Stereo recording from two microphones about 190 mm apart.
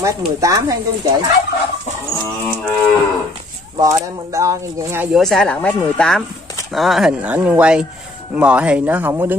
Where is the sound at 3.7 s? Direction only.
20° right (ahead or behind).